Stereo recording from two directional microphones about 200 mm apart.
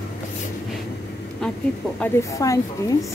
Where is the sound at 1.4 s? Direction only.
5° left (ahead or behind).